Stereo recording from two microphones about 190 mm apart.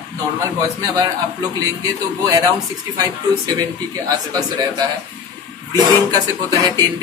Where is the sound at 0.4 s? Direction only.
15° right (ahead or behind).